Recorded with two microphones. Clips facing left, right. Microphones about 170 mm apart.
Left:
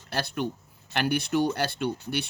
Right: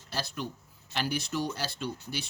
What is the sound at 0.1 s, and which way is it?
Speech, 60° left (ahead or behind).